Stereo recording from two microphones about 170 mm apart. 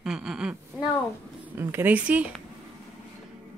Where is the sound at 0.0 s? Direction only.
5° right (ahead or behind).